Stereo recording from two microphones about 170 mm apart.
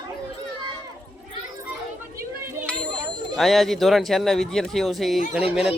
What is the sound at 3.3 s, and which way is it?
Speech, centre (ahead or behind).